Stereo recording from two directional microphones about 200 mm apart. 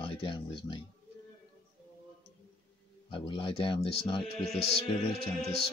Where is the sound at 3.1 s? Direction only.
25° left (ahead or behind).